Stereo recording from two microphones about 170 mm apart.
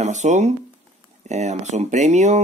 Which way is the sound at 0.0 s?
45° right (ahead or behind).